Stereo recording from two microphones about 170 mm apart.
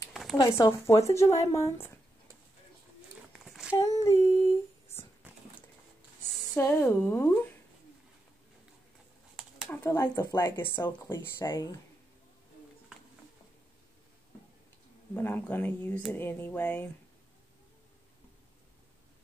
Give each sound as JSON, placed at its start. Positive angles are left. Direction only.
{"t": 0.1, "sound": "a sound", "side_deg": 0}
{"t": 0.4, "sound": "speech", "side_deg": 20}
{"t": 3.3, "sound": "a sound", "side_deg": 0}
{"t": 4.0, "sound": "humming", "side_deg": 20}
{"t": 6.4, "sound": "speech", "side_deg": 10}
{"t": 9.7, "sound": "speech", "side_deg": 15}
{"t": 11.4, "sound": "speech", "side_deg": 25}
{"t": 15.1, "sound": "speech", "side_deg": 10}